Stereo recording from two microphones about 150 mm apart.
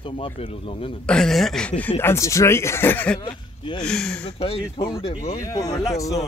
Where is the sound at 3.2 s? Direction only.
35° left (ahead or behind).